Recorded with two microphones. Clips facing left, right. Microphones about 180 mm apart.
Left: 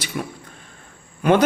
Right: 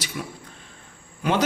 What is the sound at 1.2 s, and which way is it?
Speech, 55° left (ahead or behind).